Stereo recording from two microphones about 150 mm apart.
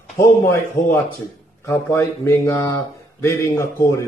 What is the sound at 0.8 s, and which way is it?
Speech, 20° left (ahead or behind).